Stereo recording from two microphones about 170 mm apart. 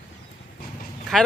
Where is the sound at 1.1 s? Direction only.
Centre (ahead or behind).